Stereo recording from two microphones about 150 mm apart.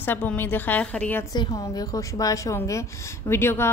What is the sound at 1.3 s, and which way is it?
A woman's voice, 25° left (ahead or behind).